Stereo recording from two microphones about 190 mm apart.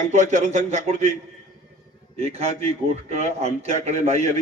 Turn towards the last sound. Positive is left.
turn(degrees=-35)  # may be behind; listen again after turning